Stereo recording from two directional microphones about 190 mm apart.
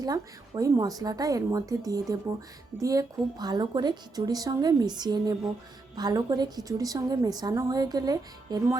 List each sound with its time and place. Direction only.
0.0 s a woman's voice: 20° right (ahead or behind)